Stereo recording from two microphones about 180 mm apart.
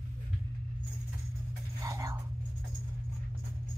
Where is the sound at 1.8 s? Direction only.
20° right (ahead or behind).